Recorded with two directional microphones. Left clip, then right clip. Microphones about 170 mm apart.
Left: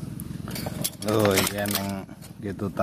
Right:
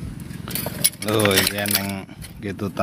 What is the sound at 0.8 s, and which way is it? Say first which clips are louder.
Speech: right 3 dB; 5° left (ahead or behind).